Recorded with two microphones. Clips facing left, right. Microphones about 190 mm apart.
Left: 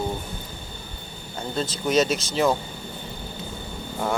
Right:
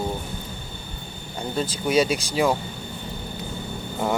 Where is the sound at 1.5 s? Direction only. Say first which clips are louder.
Right 1 dB; 10° right (ahead or behind).